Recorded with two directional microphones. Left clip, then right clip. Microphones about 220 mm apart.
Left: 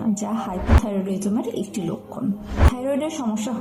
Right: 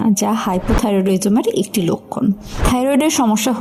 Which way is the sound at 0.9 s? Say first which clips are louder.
Right 10 dB; 45° right (ahead or behind).